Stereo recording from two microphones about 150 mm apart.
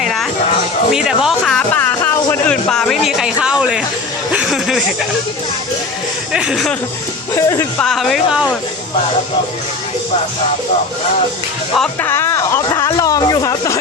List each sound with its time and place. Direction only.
0.0 s music: centre (ahead or behind)
0.9 s a sound: 5° right (ahead or behind)
6.3 s speech: 5° right (ahead or behind)
7.3 s speech: 20° left (ahead or behind)
7.8 s speech: centre (ahead or behind)
12.0 s speech: 15° left (ahead or behind)